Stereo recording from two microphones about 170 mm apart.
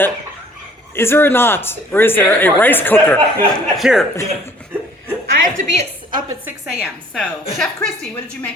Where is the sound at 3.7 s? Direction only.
Centre (ahead or behind).